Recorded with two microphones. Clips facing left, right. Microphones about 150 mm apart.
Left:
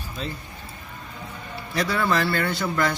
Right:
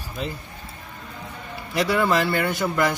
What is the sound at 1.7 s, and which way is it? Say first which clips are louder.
Speech: right 3 dB; 15° right (ahead or behind).